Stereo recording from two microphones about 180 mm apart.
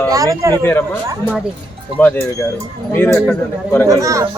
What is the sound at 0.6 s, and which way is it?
Speech, 10° left (ahead or behind).